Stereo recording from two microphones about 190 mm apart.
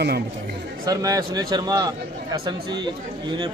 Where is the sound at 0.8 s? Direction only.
20° right (ahead or behind).